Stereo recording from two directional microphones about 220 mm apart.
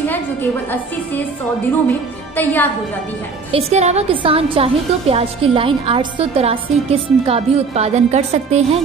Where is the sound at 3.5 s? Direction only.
30° right (ahead or behind).